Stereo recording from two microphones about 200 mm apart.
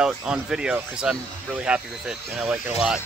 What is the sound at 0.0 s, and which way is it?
Speech, 5° right (ahead or behind).